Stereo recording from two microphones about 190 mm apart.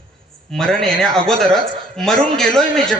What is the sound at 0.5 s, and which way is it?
A man's voice, 5° left (ahead or behind).